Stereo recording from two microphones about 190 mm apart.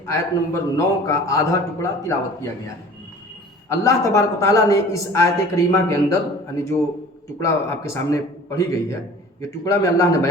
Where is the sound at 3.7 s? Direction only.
15° left (ahead or behind).